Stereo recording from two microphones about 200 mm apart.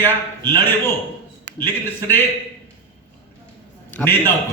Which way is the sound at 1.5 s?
60° right (ahead or behind).